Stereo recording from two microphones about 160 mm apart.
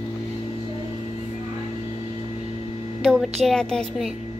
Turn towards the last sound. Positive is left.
turn(degrees=0)  # may be behind; listen again after turning